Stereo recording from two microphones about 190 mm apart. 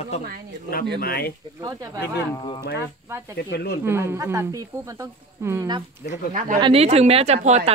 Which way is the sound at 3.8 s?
15° right (ahead or behind).